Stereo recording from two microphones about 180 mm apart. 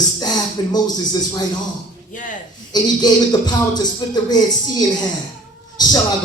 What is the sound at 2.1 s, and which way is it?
Speech, 45° left (ahead or behind).